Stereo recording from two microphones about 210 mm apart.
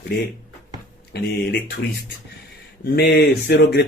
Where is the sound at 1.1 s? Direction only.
50° left (ahead or behind).